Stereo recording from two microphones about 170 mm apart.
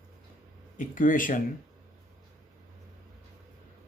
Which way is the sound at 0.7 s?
50° left (ahead or behind).